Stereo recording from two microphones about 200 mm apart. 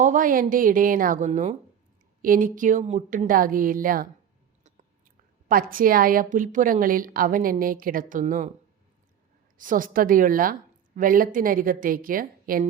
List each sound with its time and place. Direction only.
0.0 s speech: 40° right (ahead or behind)
5.5 s speech: 45° right (ahead or behind)
9.6 s speech: 40° right (ahead or behind)